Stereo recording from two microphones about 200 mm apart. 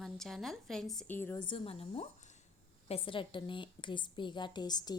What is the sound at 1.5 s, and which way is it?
A woman's voice, 30° left (ahead or behind).